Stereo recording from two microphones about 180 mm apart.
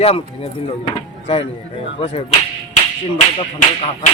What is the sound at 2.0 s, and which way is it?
Speech, 30° left (ahead or behind).